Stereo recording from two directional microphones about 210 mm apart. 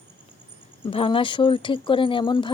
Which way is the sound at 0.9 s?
25° left (ahead or behind).